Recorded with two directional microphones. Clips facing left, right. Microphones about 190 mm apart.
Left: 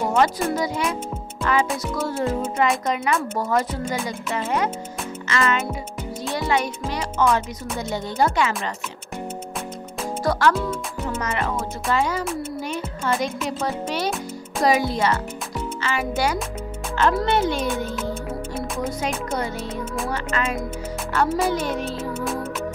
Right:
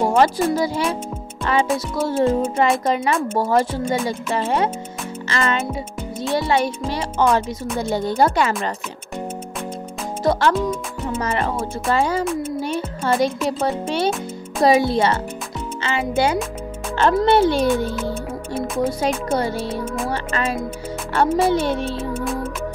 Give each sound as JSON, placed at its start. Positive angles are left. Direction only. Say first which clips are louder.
{"t": 0.0, "sound": "speech", "louder": "right 4 dB", "side_deg": -30}
{"t": 10.2, "sound": "a child's voice", "louder": "right 3 dB", "side_deg": -25}
{"t": 19.7, "sound": "music", "louder": "right 3 dB", "side_deg": -10}
{"t": 20.1, "sound": "speech", "louder": "even", "side_deg": -30}